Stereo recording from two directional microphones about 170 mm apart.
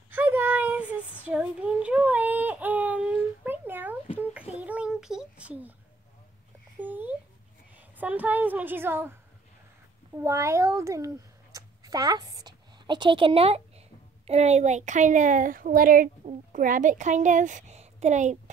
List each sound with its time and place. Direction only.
0.1 s a sound: 10° right (ahead or behind)
1.2 s baby cry: 10° right (ahead or behind)
4.2 s child singing: 10° right (ahead or behind)
6.8 s a sound: 10° right (ahead or behind)
8.0 s a woman's voice: 10° right (ahead or behind)
10.1 s a woman's voice: 15° right (ahead or behind); by 18.4 s 45° right (ahead or behind)